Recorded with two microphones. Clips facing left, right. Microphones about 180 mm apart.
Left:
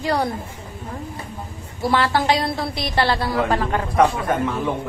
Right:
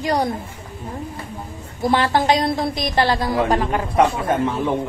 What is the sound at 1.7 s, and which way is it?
A man's voice, 20° right (ahead or behind).